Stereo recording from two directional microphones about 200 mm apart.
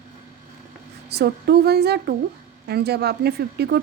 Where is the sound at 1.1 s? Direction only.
55° right (ahead or behind).